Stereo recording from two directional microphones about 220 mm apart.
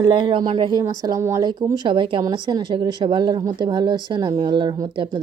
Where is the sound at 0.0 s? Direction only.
20° right (ahead or behind).